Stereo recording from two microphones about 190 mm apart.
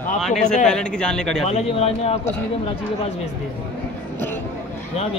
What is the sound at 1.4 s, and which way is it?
Speech, 30° left (ahead or behind).